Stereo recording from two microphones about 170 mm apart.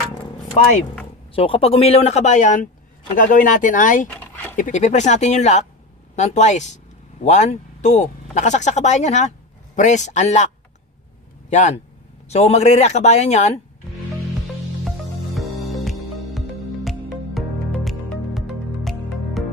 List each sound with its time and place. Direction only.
0.6 s speech: 40° left (ahead or behind)
4.1 s a sound: 10° left (ahead or behind)
4.6 s speech: 45° left (ahead or behind)
11.5 s speech: 45° left (ahead or behind)
14.9 s music: centre (ahead or behind)